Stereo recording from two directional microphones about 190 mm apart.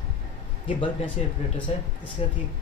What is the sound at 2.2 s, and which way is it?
Speech, 35° left (ahead or behind).